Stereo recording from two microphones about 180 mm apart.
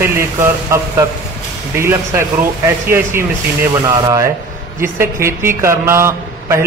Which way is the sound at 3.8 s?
20° right (ahead or behind).